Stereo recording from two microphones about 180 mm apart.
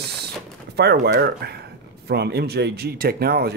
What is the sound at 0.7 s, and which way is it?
Speech, 65° right (ahead or behind).